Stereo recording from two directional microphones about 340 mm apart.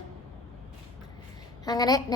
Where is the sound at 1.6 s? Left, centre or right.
Centre.